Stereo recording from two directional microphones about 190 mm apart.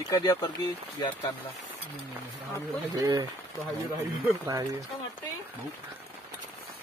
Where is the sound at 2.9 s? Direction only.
20° right (ahead or behind).